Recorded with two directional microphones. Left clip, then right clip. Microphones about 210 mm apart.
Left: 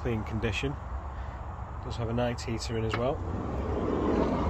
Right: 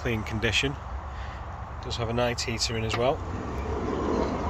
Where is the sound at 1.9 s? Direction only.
10° right (ahead or behind).